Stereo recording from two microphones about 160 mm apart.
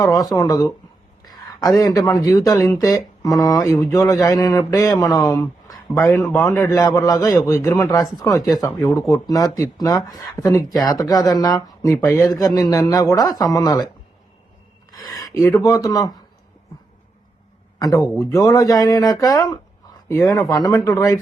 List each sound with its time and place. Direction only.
0.0 s speech: 25° left (ahead or behind)
11.9 s speech: centre (ahead or behind)
12.1 s speech: 20° left (ahead or behind)
14.9 s speech: 25° left (ahead or behind)
17.7 s a man's voice: 20° left (ahead or behind)